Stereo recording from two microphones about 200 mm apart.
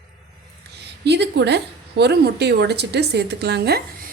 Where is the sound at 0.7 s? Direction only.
55° right (ahead or behind).